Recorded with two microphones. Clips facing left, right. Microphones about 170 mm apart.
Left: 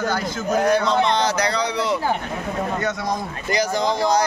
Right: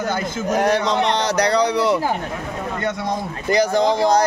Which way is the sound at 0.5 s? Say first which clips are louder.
Even; 90° right.